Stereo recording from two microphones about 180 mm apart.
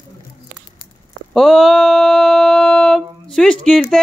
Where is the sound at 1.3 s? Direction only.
Centre (ahead or behind).